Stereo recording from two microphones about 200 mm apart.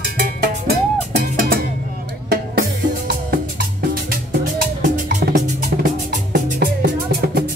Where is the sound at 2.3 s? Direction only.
50° right (ahead or behind).